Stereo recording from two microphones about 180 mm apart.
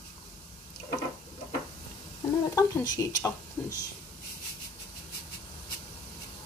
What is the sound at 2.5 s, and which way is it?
A woman's voice, 20° left (ahead or behind).